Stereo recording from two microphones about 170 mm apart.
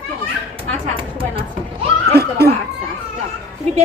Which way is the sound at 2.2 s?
70° right (ahead or behind).